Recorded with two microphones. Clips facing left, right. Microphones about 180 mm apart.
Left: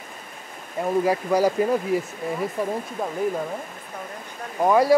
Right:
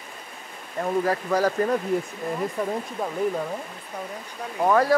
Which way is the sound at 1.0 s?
10° left (ahead or behind).